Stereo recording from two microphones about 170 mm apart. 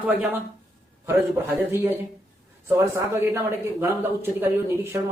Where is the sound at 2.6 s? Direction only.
15° right (ahead or behind).